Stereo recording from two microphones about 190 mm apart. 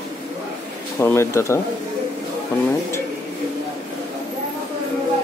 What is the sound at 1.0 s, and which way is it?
Speech, 15° left (ahead or behind).